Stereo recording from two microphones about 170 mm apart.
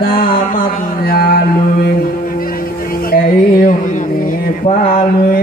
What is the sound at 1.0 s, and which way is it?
Mantra, 60° left (ahead or behind).